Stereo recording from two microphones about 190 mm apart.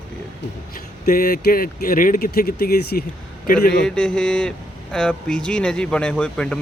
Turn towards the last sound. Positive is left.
turn(degrees=5)  # may be behind; listen again after turning